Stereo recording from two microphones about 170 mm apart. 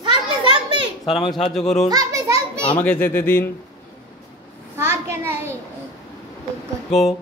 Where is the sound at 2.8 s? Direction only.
10° left (ahead or behind).